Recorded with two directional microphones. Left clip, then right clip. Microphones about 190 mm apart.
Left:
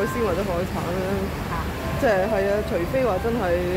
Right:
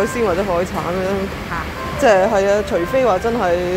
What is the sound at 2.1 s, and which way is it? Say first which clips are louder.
Speech: right 8 dB; 20° right (ahead or behind).